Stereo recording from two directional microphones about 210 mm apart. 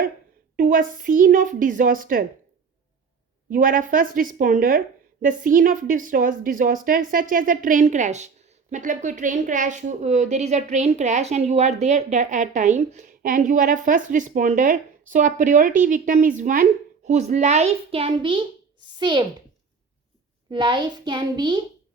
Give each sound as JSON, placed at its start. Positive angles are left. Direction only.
{"t": 0.5, "sound": "a woman's voice", "side_deg": -40}
{"t": 3.5, "sound": "a woman's voice", "side_deg": -40}
{"t": 20.5, "sound": "a child's voice", "side_deg": -20}